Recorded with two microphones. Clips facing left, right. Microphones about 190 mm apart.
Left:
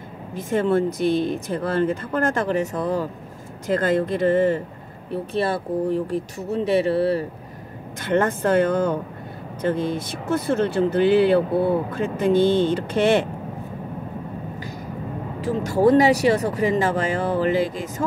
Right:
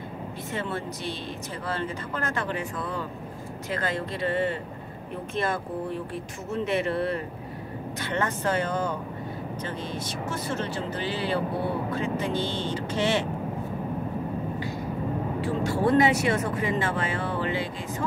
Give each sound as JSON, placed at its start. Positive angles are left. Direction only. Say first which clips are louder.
{"t": 0.5, "sound": "speech", "louder": "left 13 dB", "side_deg": 50}
{"t": 5.1, "sound": "speech", "louder": "left 6 dB", "side_deg": 35}
{"t": 8.0, "sound": "speech", "louder": "left 8 dB", "side_deg": 50}
{"t": 15.4, "sound": "speech", "louder": "left 8 dB", "side_deg": 40}